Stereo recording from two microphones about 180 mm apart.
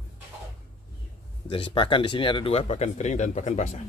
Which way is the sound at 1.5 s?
30° left (ahead or behind).